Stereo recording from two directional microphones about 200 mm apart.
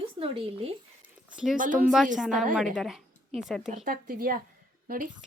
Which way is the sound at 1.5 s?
40° right (ahead or behind).